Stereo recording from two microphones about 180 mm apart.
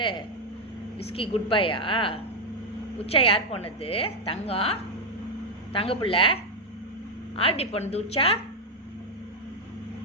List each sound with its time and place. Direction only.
1.1 s a woman's voice: 30° left (ahead or behind)